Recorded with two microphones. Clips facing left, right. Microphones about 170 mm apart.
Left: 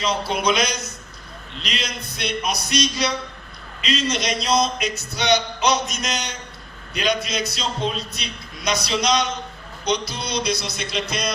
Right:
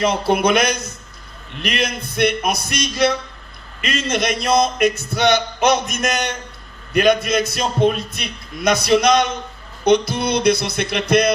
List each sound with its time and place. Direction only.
0.0 s music: 55° right (ahead or behind)
2.1 s a man's voice: 55° right (ahead or behind)
9.8 s music: 55° right (ahead or behind)